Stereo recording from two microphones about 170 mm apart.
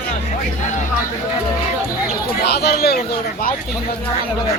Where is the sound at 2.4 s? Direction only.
70° left (ahead or behind).